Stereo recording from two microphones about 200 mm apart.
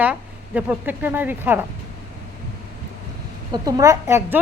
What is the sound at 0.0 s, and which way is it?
Speech, 5° right (ahead or behind).